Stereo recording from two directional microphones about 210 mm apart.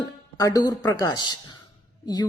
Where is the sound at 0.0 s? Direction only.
15° left (ahead or behind).